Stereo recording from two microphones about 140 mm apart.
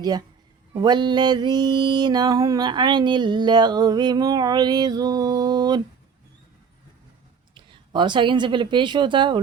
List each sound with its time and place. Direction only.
0.8 s music: 30° right (ahead or behind)
7.5 s speech: 35° right (ahead or behind)